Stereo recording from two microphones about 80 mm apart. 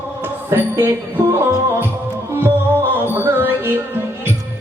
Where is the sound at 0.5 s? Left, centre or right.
Right.